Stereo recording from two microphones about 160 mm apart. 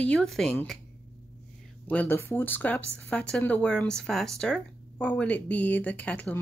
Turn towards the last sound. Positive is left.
turn(degrees=10)  # may be behind; listen again after turning